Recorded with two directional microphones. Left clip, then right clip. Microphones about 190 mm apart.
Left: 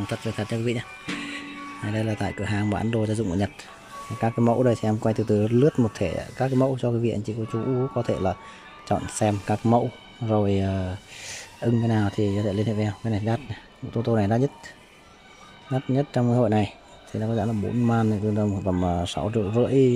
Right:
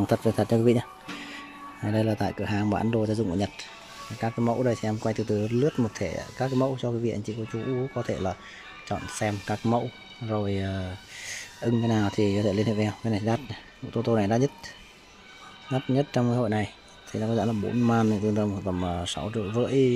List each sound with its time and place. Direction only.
0.0 s speech: 15° right (ahead or behind); by 14.5 s centre (ahead or behind)
15.7 s speech: centre (ahead or behind)
16.4 s music: 10° left (ahead or behind)
17.2 s speech: centre (ahead or behind)